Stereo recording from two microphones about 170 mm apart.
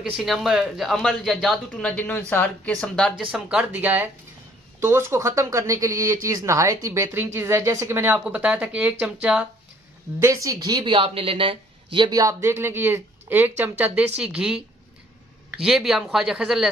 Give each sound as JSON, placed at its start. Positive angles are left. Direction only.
{"t": 0.1, "sound": "speech", "side_deg": 0}
{"t": 10.2, "sound": "speech", "side_deg": -20}